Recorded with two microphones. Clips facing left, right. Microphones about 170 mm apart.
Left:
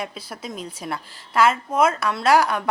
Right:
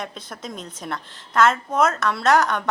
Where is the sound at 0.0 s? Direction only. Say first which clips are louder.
Left 1 dB; 5° left (ahead or behind).